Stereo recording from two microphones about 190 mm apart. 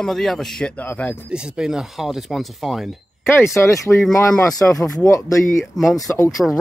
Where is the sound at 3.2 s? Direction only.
15° left (ahead or behind).